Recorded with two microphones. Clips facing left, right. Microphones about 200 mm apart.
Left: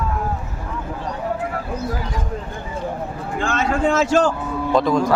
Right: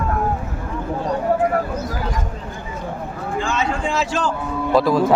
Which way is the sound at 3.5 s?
50° left (ahead or behind).